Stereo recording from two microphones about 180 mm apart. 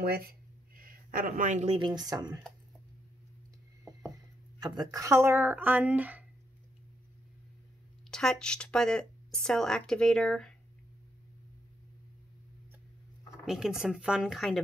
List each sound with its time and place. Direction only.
0.0 s a sound: 60° right (ahead or behind); by 1.8 s 40° right (ahead or behind)
1.8 s speech: 25° right (ahead or behind)
4.6 s speech: 20° right (ahead or behind)
8.1 s speech: 5° left (ahead or behind)
13.5 s speech: 5° right (ahead or behind)